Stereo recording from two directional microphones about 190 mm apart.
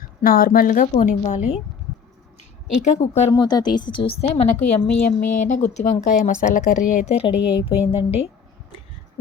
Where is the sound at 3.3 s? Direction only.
20° left (ahead or behind).